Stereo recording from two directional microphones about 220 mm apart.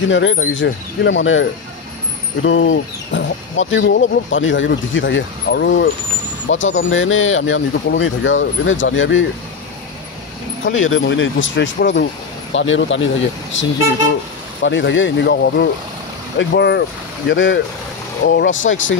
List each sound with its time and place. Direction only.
0.1 s speech: 60° left (ahead or behind)
10.6 s speech: 65° left (ahead or behind)